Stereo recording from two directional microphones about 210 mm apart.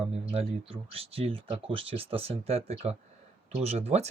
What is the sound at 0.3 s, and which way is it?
Speech, 30° right (ahead or behind).